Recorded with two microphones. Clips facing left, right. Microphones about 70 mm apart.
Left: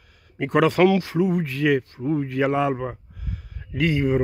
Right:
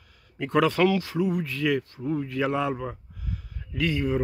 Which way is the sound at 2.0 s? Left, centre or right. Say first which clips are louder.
Left 4 dB; left.